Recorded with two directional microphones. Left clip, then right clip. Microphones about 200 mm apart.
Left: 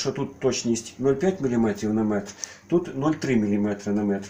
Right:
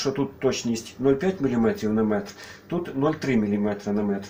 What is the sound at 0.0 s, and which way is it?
Speech, 20° left (ahead or behind).